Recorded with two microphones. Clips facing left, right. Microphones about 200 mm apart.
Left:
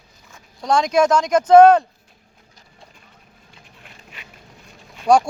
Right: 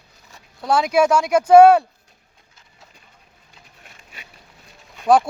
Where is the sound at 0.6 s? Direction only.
5° right (ahead or behind).